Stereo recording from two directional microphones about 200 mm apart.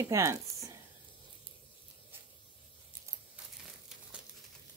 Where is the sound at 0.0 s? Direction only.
15° right (ahead or behind).